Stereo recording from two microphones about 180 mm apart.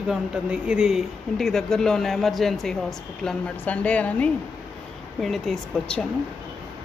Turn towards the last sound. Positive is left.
turn(degrees=5)  # may be behind; listen again after turning